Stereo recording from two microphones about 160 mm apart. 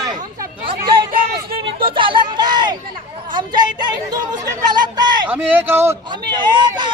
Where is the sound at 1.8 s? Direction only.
30° right (ahead or behind).